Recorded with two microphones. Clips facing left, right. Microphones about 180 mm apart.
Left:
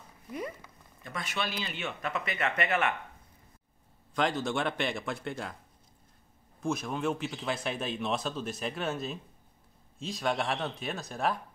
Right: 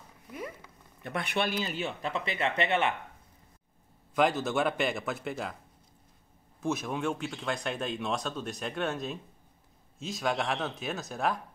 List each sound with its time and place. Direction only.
1.0 s speech: 60° right (ahead or behind); by 2.9 s 25° right (ahead or behind)
4.1 s speech: 5° right (ahead or behind)
6.6 s speech: 5° right (ahead or behind)